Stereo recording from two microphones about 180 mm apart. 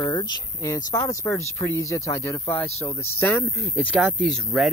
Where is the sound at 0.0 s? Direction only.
25° left (ahead or behind).